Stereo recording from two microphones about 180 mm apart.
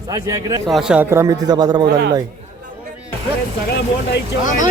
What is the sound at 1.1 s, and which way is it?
Speech, 15° right (ahead or behind).